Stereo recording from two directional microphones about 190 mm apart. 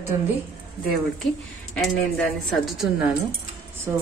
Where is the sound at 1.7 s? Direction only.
5° left (ahead or behind).